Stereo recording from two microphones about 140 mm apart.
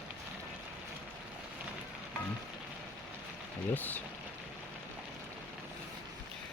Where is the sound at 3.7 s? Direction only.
10° left (ahead or behind).